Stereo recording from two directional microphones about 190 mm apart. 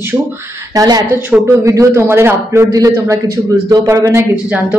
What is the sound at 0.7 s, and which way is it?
Speech, 20° right (ahead or behind).